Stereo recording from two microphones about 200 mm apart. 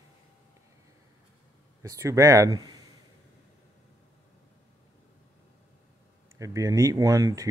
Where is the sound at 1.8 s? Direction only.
15° right (ahead or behind).